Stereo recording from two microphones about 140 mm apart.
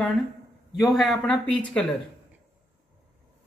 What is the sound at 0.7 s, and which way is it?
A man's voice, centre (ahead or behind).